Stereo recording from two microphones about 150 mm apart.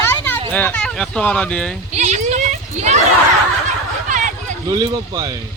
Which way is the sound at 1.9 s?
50° right (ahead or behind).